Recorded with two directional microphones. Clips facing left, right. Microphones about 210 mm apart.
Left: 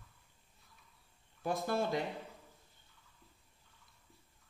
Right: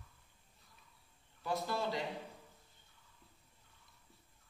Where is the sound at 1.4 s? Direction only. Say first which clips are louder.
Left 3 dB; 50° left (ahead or behind).